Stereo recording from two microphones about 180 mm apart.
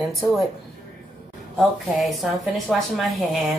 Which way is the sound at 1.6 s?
Centre (ahead or behind).